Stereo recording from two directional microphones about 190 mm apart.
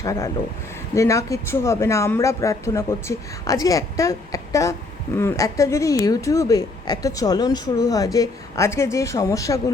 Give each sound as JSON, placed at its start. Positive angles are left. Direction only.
{"t": 0.0, "sound": "speech", "side_deg": 15}